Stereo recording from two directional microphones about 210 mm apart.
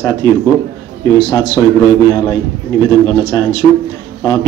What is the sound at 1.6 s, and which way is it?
A man's voice, 15° left (ahead or behind).